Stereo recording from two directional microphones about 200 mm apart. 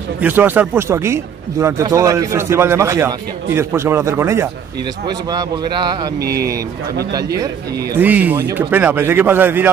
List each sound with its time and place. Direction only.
0.2 s speech: 10° right (ahead or behind)
6.1 s speech: 55° right (ahead or behind)
8.0 s speech: 10° right (ahead or behind)